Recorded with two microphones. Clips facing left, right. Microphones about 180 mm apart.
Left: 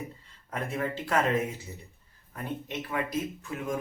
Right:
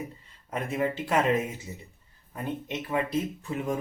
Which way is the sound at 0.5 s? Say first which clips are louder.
Right 3 dB; 15° right (ahead or behind).